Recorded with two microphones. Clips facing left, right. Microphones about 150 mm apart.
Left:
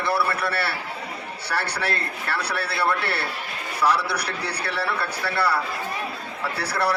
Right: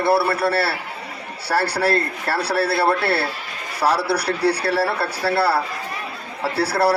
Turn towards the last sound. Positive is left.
turn(degrees=-30)  # may be behind; listen again after turning